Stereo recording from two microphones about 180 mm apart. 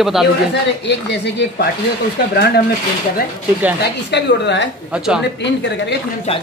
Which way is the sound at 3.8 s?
70° left (ahead or behind).